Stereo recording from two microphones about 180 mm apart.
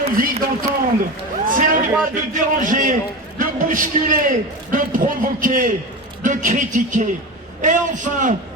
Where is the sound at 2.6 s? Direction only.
45° right (ahead or behind).